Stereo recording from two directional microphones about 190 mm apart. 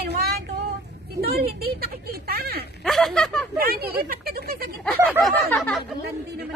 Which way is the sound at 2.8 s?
Centre (ahead or behind).